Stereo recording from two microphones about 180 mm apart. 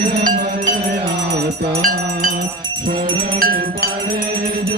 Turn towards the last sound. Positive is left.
turn(degrees=-55)  # may be behind; listen again after turning